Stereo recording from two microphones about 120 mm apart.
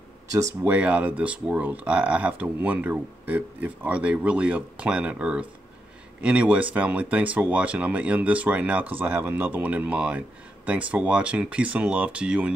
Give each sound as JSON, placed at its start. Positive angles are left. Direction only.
{"t": 0.3, "sound": "speech", "side_deg": -25}
{"t": 0.7, "sound": "speech", "side_deg": -10}